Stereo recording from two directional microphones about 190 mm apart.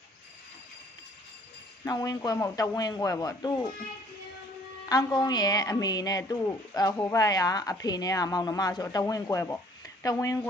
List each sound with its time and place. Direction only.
1.9 s a woman's voice: 20° left (ahead or behind)
4.8 s a woman's voice: 20° left (ahead or behind)